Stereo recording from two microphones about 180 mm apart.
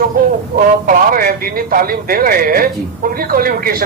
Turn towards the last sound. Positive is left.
turn(degrees=-55)  # may be behind; listen again after turning